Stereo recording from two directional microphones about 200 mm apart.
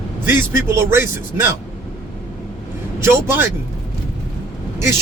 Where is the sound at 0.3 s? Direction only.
10° right (ahead or behind).